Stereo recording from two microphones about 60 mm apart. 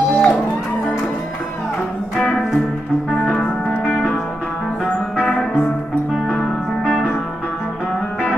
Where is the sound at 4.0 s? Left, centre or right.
Centre.